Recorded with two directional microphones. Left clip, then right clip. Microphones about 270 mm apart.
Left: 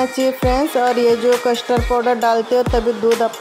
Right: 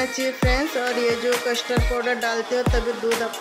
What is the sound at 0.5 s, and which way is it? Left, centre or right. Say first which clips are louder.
Speech: left 8 dB; centre.